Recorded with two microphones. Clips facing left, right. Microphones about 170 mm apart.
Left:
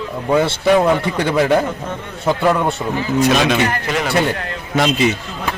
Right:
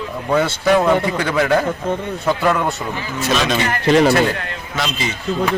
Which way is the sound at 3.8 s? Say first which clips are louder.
Right 8 dB; 30° right (ahead or behind).